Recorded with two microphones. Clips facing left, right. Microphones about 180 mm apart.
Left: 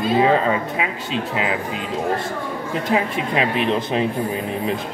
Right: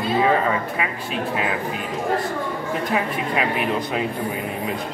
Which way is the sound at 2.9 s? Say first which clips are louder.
Left 4 dB; 25° left (ahead or behind).